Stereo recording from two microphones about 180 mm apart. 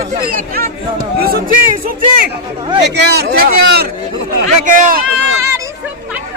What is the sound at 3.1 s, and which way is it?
Speech, 60° right (ahead or behind).